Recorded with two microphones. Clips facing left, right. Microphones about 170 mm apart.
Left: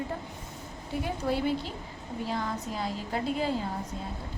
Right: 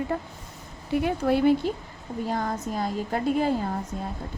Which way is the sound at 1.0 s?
60° right (ahead or behind).